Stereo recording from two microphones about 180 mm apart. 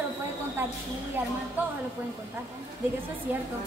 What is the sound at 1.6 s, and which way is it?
Speech, 10° right (ahead or behind).